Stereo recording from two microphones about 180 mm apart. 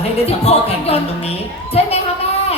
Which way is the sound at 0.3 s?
35° left (ahead or behind).